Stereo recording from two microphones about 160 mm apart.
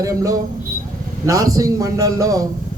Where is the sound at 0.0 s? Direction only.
20° right (ahead or behind).